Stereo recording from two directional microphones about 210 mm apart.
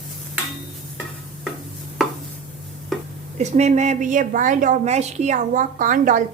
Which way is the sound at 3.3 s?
35° right (ahead or behind).